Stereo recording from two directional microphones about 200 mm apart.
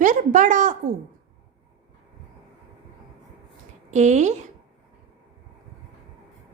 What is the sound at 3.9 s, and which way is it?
Speech, 35° right (ahead or behind).